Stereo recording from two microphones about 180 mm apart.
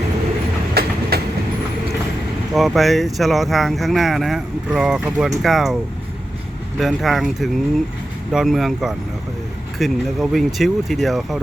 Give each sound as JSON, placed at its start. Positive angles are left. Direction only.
{"t": 0.7, "sound": "train", "side_deg": -60}
{"t": 2.5, "sound": "speech", "side_deg": 0}
{"t": 6.7, "sound": "speech", "side_deg": 0}